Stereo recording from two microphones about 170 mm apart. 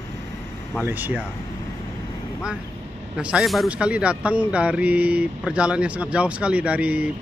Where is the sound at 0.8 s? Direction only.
10° right (ahead or behind).